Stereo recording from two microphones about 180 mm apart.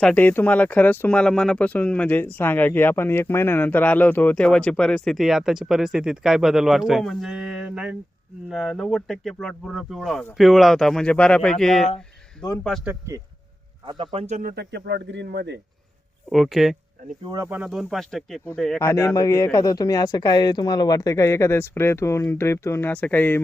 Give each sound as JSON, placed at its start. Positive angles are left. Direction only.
{"t": 0.0, "sound": "speech", "side_deg": 10}
{"t": 13.8, "sound": "speech", "side_deg": -30}
{"t": 14.5, "sound": "speech", "side_deg": -65}
{"t": 16.3, "sound": "speech", "side_deg": 0}
{"t": 17.2, "sound": "speech", "side_deg": -20}
{"t": 18.8, "sound": "speech", "side_deg": 15}